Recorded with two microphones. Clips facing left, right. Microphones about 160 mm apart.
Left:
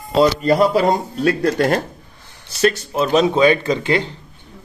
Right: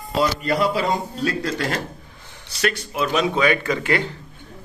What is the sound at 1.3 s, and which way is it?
Speech, 60° left (ahead or behind).